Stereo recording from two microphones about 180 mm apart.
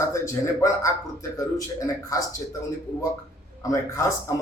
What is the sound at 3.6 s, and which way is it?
Speech, 15° left (ahead or behind).